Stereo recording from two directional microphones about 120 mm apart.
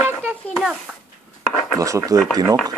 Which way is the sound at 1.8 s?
30° right (ahead or behind).